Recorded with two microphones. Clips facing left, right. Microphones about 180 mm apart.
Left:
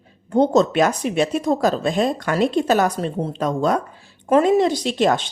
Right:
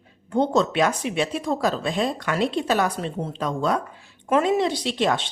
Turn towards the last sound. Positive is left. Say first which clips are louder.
# left 4 dB
turn(degrees=45)  # may be behind; listen again after turning